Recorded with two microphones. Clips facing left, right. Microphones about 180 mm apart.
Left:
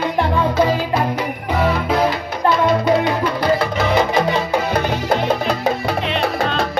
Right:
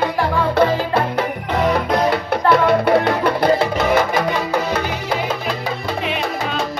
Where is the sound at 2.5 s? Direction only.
60° right (ahead or behind).